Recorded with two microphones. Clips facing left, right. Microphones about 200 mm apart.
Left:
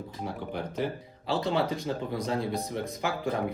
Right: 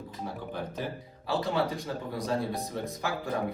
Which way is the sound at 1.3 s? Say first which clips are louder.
Left 1 dB; 20° left (ahead or behind).